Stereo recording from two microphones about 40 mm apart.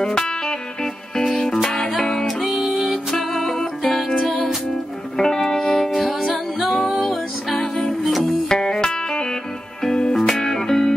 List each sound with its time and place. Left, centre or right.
1.1 s music: centre
2.4 s music: centre
5.1 s music: centre
5.9 s music: centre
8.5 s music: centre